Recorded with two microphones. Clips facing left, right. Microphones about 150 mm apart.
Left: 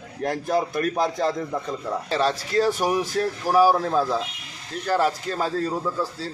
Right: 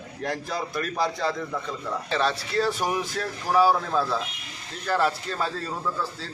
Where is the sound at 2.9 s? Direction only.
40° left (ahead or behind).